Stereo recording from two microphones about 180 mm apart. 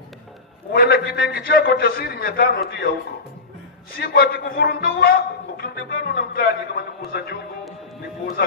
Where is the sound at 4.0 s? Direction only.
60° left (ahead or behind).